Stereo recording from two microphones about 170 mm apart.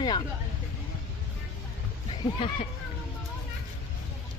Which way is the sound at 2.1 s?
35° left (ahead or behind).